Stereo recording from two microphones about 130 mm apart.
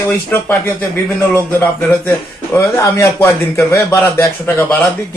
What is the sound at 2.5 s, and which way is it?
A man's voice, 20° left (ahead or behind).